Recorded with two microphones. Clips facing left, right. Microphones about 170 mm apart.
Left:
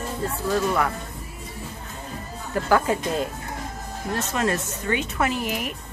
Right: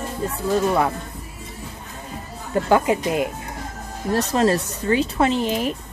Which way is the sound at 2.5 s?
20° right (ahead or behind).